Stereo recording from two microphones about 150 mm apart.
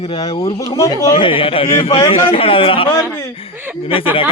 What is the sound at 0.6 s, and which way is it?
Speech, 20° left (ahead or behind).